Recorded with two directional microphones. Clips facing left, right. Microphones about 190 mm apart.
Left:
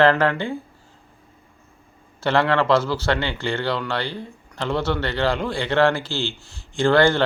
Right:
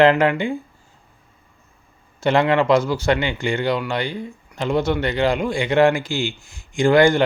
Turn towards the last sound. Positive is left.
turn(degrees=-15)  # may be behind; listen again after turning